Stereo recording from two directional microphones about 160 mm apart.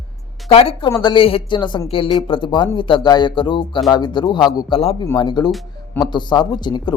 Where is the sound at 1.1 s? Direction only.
35° left (ahead or behind).